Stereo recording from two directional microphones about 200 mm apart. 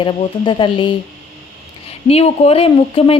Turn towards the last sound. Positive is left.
turn(degrees=30)  # may be behind; listen again after turning